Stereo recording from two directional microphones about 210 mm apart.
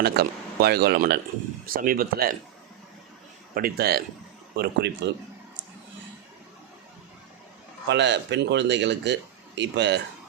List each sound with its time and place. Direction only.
0.0 s speech: 50° right (ahead or behind)
3.5 s speech: 45° right (ahead or behind)
7.9 s speech: 55° right (ahead or behind)